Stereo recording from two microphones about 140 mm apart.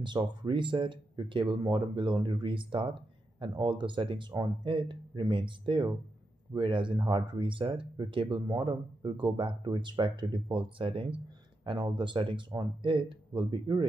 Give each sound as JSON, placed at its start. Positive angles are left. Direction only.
{"t": 0.0, "sound": "speech", "side_deg": -35}